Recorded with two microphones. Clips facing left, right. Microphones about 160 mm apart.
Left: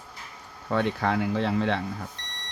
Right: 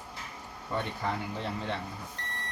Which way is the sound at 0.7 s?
90° left.